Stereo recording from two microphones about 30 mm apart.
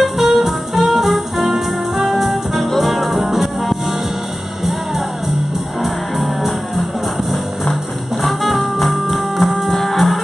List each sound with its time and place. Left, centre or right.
0.0 s music: centre
5.8 s music: centre
8.2 s music: centre